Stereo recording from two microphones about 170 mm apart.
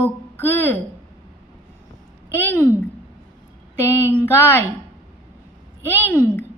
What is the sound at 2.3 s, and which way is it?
Speech, 15° left (ahead or behind).